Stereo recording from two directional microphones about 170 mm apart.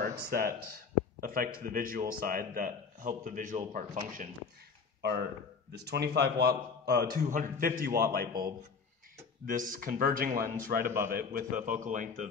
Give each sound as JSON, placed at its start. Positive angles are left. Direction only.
{"t": 0.0, "sound": "a man's voice", "side_deg": -55}
{"t": 5.7, "sound": "a man's voice", "side_deg": -80}
{"t": 10.8, "sound": "a man's voice", "side_deg": -15}
{"t": 11.1, "sound": "a man's voice", "side_deg": -55}